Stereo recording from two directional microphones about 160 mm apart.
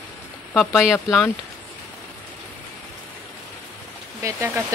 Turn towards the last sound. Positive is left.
turn(degrees=-15)  # may be behind; listen again after turning